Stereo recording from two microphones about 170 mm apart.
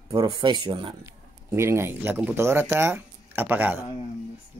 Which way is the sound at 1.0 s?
15° right (ahead or behind).